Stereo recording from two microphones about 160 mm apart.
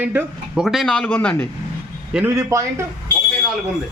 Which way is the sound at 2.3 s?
20° right (ahead or behind).